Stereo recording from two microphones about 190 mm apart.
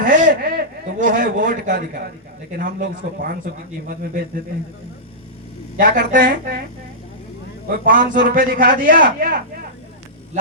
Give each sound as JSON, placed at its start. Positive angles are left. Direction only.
{"t": 0.0, "sound": "a man's voice", "side_deg": -45}
{"t": 5.7, "sound": "a man's voice", "side_deg": -45}
{"t": 7.7, "sound": "a man's voice", "side_deg": -45}